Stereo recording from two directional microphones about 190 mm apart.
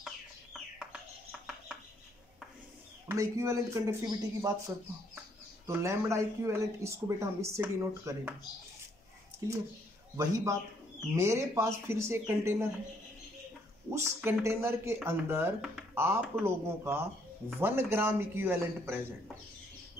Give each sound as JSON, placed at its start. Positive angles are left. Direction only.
{"t": 0.0, "sound": "chicken", "side_deg": 0}
{"t": 3.1, "sound": "speech", "side_deg": -15}
{"t": 10.1, "sound": "speech", "side_deg": -15}
{"t": 13.8, "sound": "speech", "side_deg": -15}